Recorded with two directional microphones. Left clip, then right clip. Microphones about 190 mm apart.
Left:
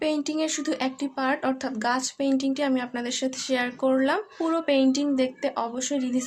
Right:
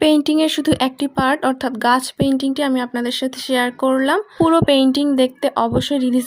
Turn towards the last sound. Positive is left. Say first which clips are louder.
# right 10 dB
turn(degrees=-40)  # may be behind; listen again after turning